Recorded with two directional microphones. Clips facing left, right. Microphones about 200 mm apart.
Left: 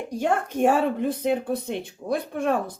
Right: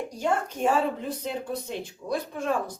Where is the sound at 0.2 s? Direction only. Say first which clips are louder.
Left 4 dB; 55° left (ahead or behind).